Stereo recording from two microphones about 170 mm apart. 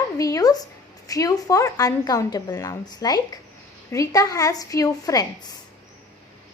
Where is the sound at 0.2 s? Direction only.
20° left (ahead or behind).